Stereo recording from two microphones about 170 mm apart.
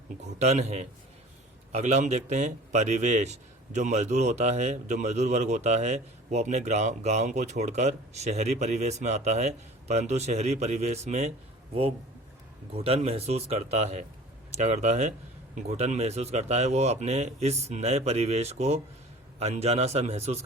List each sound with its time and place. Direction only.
0.2 s a man's voice: 40° right (ahead or behind)